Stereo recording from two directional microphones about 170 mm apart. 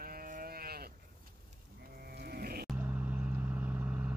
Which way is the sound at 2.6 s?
10° right (ahead or behind).